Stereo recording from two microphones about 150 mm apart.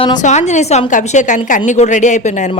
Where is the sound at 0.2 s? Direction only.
50° left (ahead or behind).